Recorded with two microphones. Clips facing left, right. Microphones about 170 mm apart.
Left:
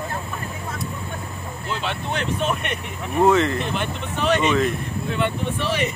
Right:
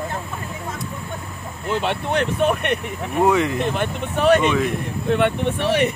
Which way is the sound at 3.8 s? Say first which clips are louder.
Right 4 dB; 50° right (ahead or behind).